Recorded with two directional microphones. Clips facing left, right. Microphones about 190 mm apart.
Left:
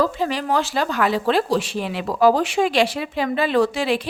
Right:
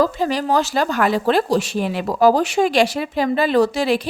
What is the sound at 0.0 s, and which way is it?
Speech, 40° right (ahead or behind).